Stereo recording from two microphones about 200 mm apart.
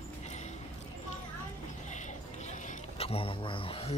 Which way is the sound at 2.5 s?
30° left (ahead or behind).